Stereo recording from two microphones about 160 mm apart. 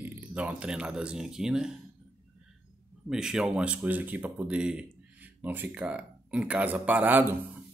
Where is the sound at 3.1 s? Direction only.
5° right (ahead or behind).